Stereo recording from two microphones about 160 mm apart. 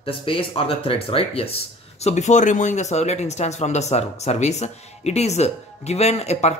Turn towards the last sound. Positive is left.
turn(degrees=40)  # may be behind; listen again after turning